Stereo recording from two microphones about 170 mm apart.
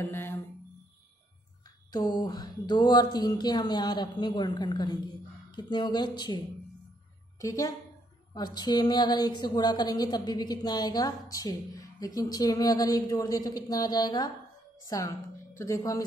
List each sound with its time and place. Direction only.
0.0 s music: 10° left (ahead or behind)
1.9 s a woman's voice: 25° left (ahead or behind)